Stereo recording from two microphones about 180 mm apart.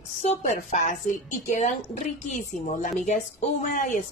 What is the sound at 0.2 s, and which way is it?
Speech, 40° left (ahead or behind).